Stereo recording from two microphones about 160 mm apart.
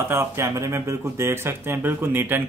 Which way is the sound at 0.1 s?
15° right (ahead or behind).